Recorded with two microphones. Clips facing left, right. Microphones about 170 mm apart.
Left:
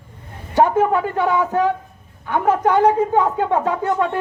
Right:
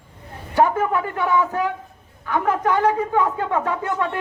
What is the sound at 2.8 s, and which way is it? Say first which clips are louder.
A man's voice: left 4 dB; 25° left (ahead or behind).